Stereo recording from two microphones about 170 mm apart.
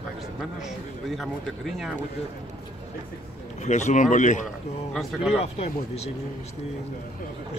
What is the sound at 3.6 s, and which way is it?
Speech, 45° left (ahead or behind).